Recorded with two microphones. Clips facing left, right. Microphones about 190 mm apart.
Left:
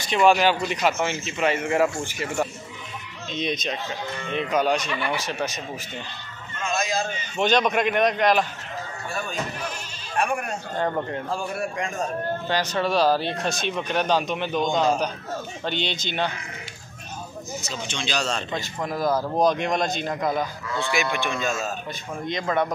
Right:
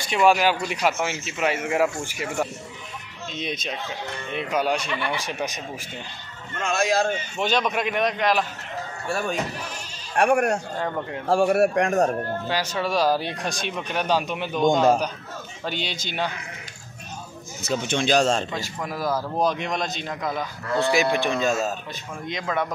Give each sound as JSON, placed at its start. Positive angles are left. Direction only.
{"t": 0.1, "sound": "speech", "side_deg": -5}
{"t": 3.3, "sound": "a man's voice", "side_deg": -5}
{"t": 6.6, "sound": "speech", "side_deg": -70}
{"t": 7.3, "sound": "a man's voice", "side_deg": -5}
{"t": 10.1, "sound": "speech", "side_deg": -75}
{"t": 12.4, "sound": "speech", "side_deg": -5}
{"t": 15.6, "sound": "speech", "side_deg": -5}
{"t": 17.6, "sound": "speech", "side_deg": -60}
{"t": 18.5, "sound": "a man's voice", "side_deg": -5}
{"t": 20.7, "sound": "speech", "side_deg": -40}
{"t": 22.3, "sound": "a man's voice", "side_deg": 0}